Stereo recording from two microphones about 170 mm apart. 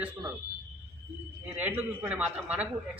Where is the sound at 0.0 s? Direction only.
20° right (ahead or behind).